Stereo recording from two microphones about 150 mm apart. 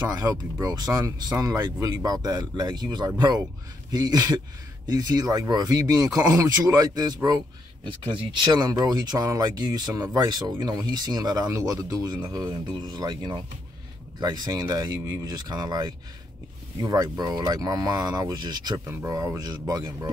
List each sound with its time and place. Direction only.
0.2 s speech: 25° right (ahead or behind)
18.9 s speech: 15° right (ahead or behind)